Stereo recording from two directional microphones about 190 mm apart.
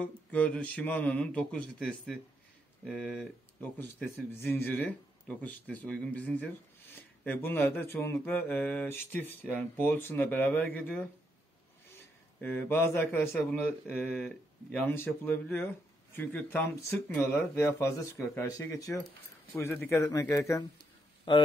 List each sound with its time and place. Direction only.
0.0 s speech: 5° left (ahead or behind)
4.6 s speech: 10° left (ahead or behind)
12.4 s a man's voice: 10° left (ahead or behind)